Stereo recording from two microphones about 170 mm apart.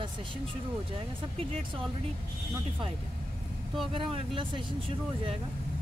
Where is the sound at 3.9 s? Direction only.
30° right (ahead or behind).